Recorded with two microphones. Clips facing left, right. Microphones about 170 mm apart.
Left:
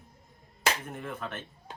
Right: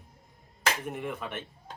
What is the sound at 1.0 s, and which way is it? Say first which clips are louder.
Speech: right 2 dB; 15° right (ahead or behind).